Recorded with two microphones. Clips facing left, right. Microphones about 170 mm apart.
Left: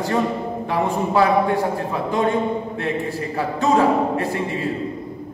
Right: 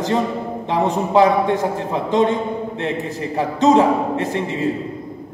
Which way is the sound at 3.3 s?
20° right (ahead or behind).